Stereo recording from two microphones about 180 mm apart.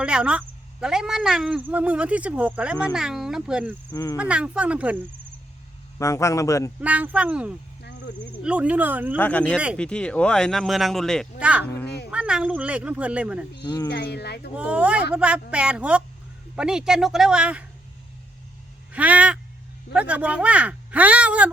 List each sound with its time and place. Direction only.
0.0 s speech: 5° right (ahead or behind)
3.9 s speech: 20° left (ahead or behind)
4.2 s speech: 5° right (ahead or behind)
6.0 s a man's voice: 15° left (ahead or behind)
6.8 s speech: 10° right (ahead or behind)
7.8 s cricket: 75° left (ahead or behind)
8.4 s speech: 5° right (ahead or behind)
9.1 s a man's voice: 10° left (ahead or behind); by 13.5 s 5° right (ahead or behind)
13.9 s speech: 65° left (ahead or behind)
14.5 s speech: 5° right (ahead or behind)
18.9 s a sound: 10° right (ahead or behind)
19.9 s speech: 5° right (ahead or behind)